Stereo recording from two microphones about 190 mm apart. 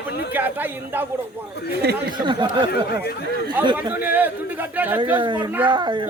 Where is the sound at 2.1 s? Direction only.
25° right (ahead or behind).